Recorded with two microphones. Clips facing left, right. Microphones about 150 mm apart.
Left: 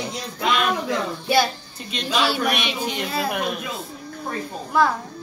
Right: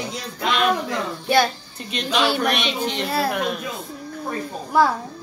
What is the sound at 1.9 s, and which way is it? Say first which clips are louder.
A woman's voice: right 1 dB; 5° left (ahead or behind).